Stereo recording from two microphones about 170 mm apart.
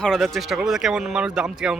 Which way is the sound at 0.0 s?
Centre (ahead or behind).